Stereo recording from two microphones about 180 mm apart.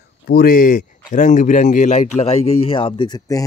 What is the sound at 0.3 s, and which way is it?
Speech, 55° left (ahead or behind).